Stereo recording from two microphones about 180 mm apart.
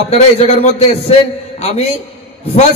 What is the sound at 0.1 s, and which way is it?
Speech, 40° left (ahead or behind).